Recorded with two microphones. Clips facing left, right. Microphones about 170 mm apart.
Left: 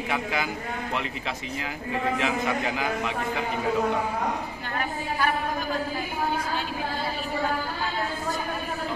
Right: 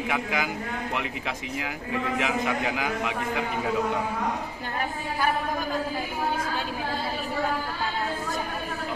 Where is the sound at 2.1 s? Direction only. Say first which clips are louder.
Right 2 dB; 15° right (ahead or behind).